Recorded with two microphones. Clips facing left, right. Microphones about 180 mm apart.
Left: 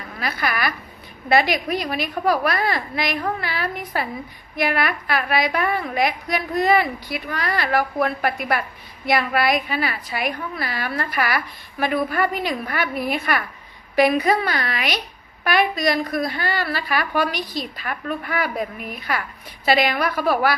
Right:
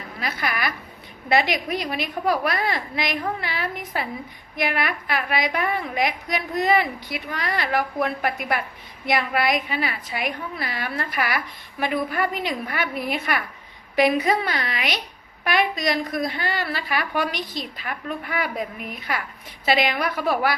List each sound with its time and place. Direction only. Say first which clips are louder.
0.2 s a woman's voice: left 3 dB; 20° right (ahead or behind)